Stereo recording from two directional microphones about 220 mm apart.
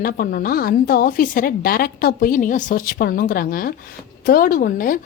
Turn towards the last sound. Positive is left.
turn(degrees=40)  # may be behind; listen again after turning